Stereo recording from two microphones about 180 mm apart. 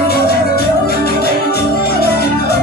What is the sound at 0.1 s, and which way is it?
Music, 60° left (ahead or behind).